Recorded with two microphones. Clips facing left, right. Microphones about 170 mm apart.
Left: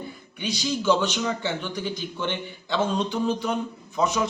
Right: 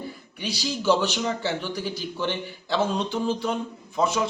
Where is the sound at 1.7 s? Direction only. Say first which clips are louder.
Even; 5° right (ahead or behind).